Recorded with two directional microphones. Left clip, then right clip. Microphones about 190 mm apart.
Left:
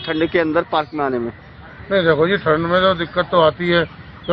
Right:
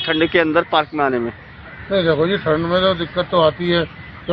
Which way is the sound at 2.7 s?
Centre (ahead or behind).